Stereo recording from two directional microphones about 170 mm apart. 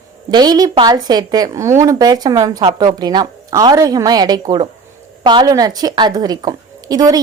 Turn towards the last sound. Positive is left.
turn(degrees=-20)  # may be behind; listen again after turning